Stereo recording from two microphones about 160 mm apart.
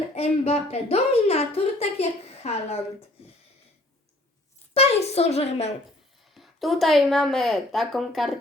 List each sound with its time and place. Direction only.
0.1 s speech: 40° left (ahead or behind)
4.7 s speech: 40° left (ahead or behind)
6.3 s a woman's voice: centre (ahead or behind)